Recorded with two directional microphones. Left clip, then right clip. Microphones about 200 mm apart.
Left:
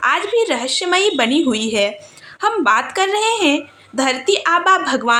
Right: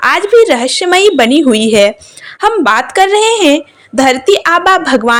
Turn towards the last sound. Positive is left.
turn(degrees=-35)  # may be behind; listen again after turning